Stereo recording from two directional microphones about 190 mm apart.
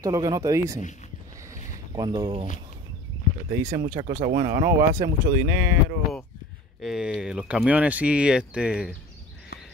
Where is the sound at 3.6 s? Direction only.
50° right (ahead or behind).